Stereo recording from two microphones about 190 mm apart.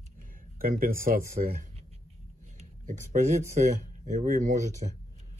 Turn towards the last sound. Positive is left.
turn(degrees=-40)  # may be behind; listen again after turning